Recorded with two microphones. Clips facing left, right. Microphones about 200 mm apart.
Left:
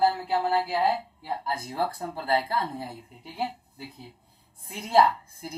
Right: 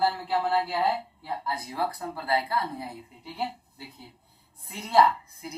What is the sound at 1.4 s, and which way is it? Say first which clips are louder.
A woman's voice: left 1 dB; 25° left (ahead or behind).